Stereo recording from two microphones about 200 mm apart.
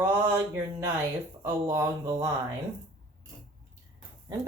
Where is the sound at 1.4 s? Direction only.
15° right (ahead or behind).